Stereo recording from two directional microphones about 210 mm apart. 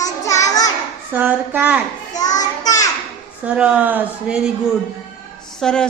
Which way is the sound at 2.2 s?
15° left (ahead or behind).